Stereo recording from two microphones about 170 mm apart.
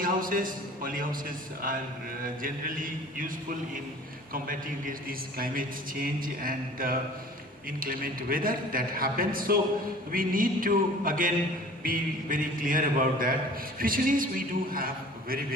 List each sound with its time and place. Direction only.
0.0 s a man's voice: 55° right (ahead or behind)
2.2 s speech: 55° right (ahead or behind)
4.4 s a man's voice: 55° right (ahead or behind)